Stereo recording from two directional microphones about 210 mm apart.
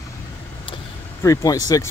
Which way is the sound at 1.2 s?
15° left (ahead or behind).